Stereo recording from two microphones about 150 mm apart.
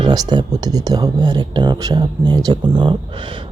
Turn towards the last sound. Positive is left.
turn(degrees=-35)  # may be behind; listen again after turning